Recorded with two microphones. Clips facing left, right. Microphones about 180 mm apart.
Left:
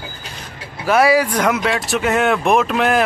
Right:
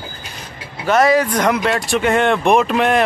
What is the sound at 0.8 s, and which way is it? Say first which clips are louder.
Speech: even; 10° left (ahead or behind).